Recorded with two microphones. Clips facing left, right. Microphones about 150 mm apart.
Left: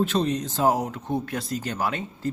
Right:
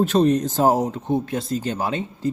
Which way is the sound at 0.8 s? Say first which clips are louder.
Right 5 dB; 20° right (ahead or behind).